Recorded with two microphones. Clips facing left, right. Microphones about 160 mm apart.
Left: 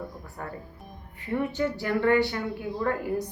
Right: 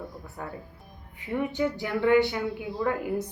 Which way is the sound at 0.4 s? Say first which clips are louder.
Even; 10° right (ahead or behind).